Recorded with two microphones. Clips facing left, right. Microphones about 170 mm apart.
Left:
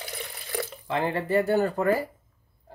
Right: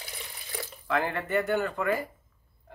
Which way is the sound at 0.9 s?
30° left (ahead or behind).